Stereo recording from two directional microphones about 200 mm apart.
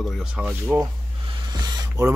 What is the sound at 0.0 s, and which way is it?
Speech, 5° right (ahead or behind).